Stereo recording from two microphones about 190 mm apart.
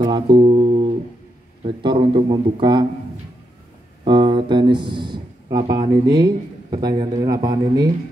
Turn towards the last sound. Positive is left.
turn(degrees=-20)  # may be behind; listen again after turning